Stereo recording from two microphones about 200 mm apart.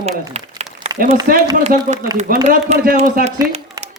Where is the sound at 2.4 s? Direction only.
40° right (ahead or behind).